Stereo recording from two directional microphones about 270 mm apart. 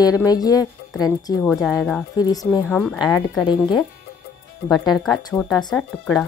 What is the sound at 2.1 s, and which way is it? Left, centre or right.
Speech, centre.